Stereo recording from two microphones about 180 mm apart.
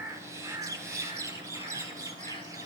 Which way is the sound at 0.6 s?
15° right (ahead or behind).